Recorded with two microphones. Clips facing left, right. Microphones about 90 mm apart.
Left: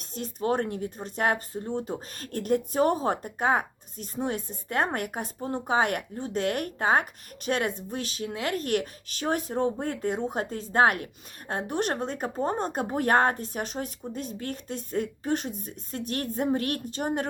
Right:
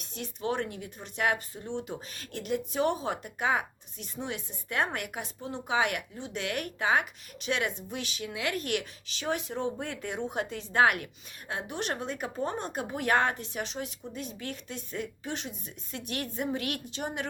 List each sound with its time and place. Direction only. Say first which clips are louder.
0.1 s a woman's voice: left 5 dB; 45° left (ahead or behind)